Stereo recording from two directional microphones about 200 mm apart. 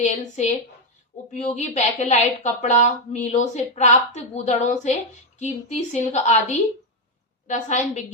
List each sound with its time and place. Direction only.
0.0 s a woman's voice: 35° left (ahead or behind)
7.4 s a woman's voice: 40° left (ahead or behind)